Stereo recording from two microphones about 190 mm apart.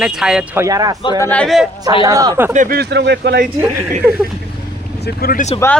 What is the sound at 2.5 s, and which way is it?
Speech, 45° right (ahead or behind).